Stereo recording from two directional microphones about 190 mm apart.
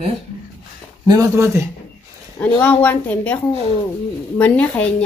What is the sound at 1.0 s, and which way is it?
Speech, 20° right (ahead or behind).